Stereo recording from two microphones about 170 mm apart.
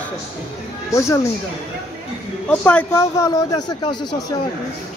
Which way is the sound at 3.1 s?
20° left (ahead or behind).